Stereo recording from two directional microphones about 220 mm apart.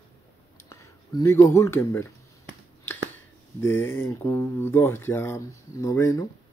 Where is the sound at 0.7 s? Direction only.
15° left (ahead or behind).